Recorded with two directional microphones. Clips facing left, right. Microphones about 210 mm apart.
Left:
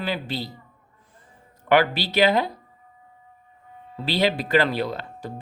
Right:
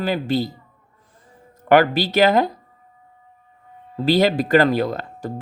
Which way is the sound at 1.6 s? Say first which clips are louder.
Right 5 dB; 45° right (ahead or behind).